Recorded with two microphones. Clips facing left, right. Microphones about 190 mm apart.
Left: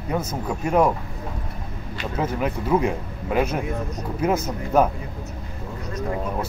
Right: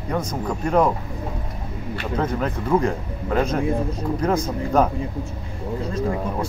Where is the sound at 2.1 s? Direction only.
10° left (ahead or behind).